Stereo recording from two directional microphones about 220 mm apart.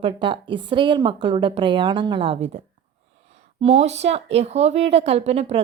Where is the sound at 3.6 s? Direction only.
30° right (ahead or behind).